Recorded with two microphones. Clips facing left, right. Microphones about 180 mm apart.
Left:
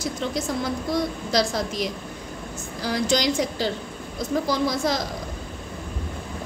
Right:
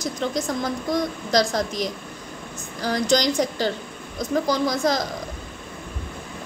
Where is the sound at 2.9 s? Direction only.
45° right (ahead or behind).